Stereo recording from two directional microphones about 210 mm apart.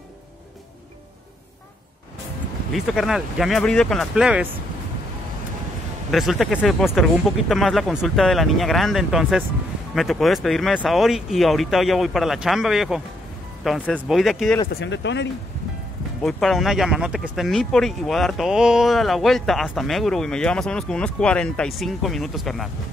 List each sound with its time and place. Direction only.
2.7 s speech: centre (ahead or behind)
6.1 s speech: centre (ahead or behind)
14.7 s speech: 55° left (ahead or behind)
16.2 s speech: centre (ahead or behind)